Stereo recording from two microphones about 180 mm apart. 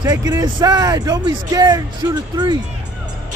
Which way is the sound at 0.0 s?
20° right (ahead or behind).